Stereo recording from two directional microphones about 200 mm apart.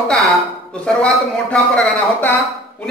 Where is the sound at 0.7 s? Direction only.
5° left (ahead or behind).